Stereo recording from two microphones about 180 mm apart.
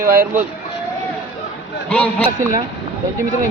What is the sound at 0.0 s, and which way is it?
Speech, 50° right (ahead or behind).